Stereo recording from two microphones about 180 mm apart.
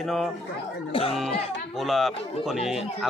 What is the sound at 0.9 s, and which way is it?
Speech, 30° left (ahead or behind).